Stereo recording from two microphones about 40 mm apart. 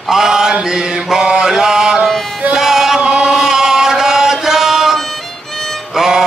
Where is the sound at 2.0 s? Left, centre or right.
Centre.